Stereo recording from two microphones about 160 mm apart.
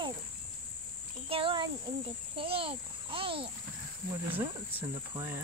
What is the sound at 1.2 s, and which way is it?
Speech, 35° right (ahead or behind).